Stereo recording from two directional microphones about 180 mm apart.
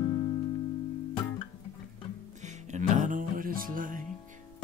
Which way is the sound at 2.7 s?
45° right (ahead or behind).